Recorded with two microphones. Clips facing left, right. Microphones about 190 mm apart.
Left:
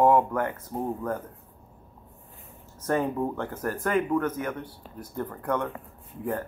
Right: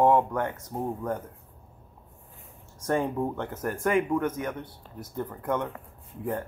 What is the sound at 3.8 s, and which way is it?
Speech, 10° right (ahead or behind).